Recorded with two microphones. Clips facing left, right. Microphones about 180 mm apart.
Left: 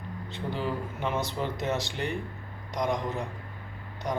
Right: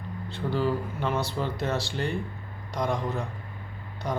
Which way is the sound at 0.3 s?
15° left (ahead or behind).